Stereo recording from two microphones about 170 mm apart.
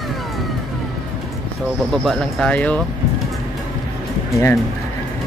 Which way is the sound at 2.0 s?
5° left (ahead or behind).